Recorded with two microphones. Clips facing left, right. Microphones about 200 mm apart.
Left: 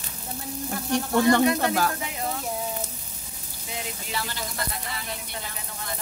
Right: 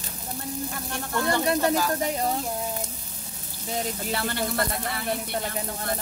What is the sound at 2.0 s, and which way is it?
Sizzle, 40° right (ahead or behind).